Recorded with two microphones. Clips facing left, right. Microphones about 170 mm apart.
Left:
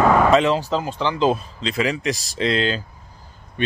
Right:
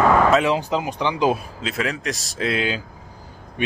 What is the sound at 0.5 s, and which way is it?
A man's voice, 15° right (ahead or behind).